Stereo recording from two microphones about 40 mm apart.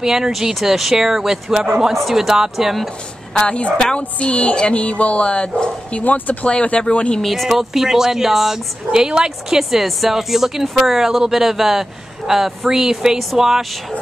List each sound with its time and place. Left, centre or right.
0.0 s speech: centre
3.3 s a woman's voice: left
6.0 s speech: left
6.4 s a woman's voice: left
7.2 s speech: centre
7.4 s speech: centre